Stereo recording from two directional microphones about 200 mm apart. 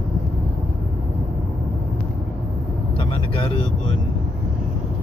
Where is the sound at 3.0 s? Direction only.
25° left (ahead or behind).